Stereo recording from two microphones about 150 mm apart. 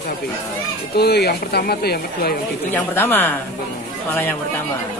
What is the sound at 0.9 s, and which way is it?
Speech, 90° left.